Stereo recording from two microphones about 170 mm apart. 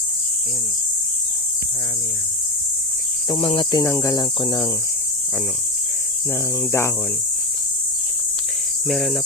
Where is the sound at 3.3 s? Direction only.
30° left (ahead or behind).